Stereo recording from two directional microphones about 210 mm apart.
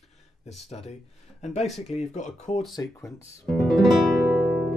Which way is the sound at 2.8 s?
15° left (ahead or behind).